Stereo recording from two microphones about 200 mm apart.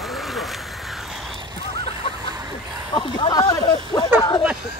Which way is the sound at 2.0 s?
25° left (ahead or behind).